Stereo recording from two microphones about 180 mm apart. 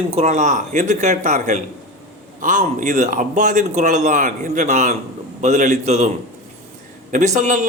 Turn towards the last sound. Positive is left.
turn(degrees=-45)  # may be behind; listen again after turning